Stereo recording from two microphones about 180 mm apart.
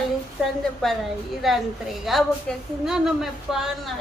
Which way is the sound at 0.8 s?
5° left (ahead or behind).